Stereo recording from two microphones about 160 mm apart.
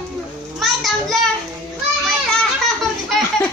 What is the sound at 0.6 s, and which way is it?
Child singing, centre (ahead or behind).